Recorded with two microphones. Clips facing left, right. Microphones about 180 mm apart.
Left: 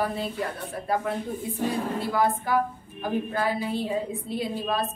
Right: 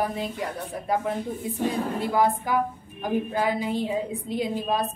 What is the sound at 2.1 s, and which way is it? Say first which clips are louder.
A woman's voice: right 1 dB; 15° right (ahead or behind).